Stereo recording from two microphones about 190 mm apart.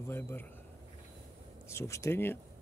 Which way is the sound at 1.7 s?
15° left (ahead or behind).